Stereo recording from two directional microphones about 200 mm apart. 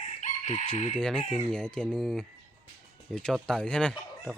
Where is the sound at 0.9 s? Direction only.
5° left (ahead or behind).